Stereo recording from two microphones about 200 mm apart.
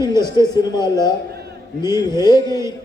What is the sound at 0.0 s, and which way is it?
A man's voice, 20° left (ahead or behind).